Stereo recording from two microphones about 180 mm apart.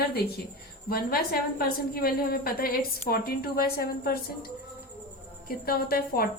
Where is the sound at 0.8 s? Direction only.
55° left (ahead or behind).